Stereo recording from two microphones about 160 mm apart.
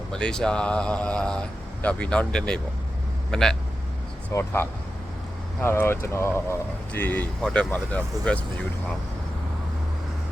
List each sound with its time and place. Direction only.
0.1 s speech: 5° left (ahead or behind)
4.3 s speech: 15° left (ahead or behind)